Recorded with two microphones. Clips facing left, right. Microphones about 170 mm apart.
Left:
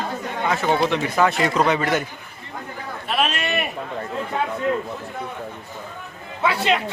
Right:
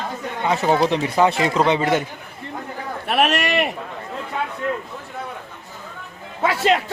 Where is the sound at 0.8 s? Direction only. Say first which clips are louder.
Right 2 dB; 30° right (ahead or behind).